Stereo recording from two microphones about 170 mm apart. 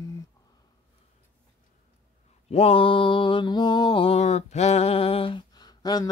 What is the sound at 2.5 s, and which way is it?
Mantra, 35° left (ahead or behind).